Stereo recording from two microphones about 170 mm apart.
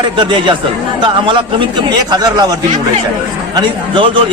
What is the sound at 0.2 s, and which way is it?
A man's voice, 30° right (ahead or behind).